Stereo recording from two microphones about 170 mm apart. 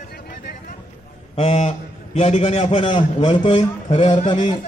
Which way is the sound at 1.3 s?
40° left (ahead or behind).